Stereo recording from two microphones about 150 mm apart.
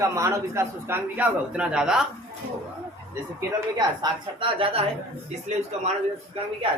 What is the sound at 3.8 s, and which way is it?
A woman's voice, 30° right (ahead or behind).